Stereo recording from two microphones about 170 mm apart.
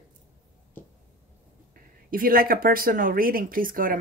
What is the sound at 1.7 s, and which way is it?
Speech, 55° right (ahead or behind).